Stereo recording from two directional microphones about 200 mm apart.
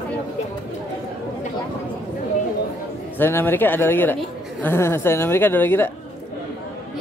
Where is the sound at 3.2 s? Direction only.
10° left (ahead or behind).